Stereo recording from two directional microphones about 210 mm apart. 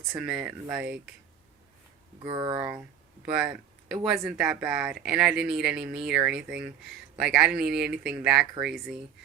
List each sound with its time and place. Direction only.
0.1 s speech: 5° right (ahead or behind)
2.2 s speech: 20° right (ahead or behind)
2.6 s speech: 10° right (ahead or behind)